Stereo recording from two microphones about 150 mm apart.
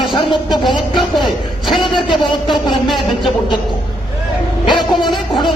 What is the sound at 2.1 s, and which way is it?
Speech, 30° left (ahead or behind).